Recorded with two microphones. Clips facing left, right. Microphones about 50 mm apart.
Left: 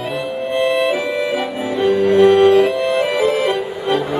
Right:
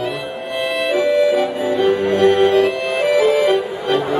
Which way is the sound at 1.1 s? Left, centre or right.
Left.